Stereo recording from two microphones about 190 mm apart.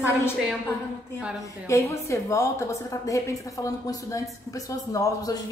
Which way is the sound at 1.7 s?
15° left (ahead or behind).